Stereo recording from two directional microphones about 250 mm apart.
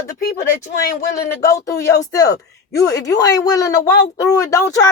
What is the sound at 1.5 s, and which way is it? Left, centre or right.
Speech, centre.